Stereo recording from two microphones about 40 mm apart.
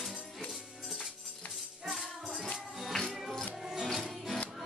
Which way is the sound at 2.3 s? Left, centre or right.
Centre.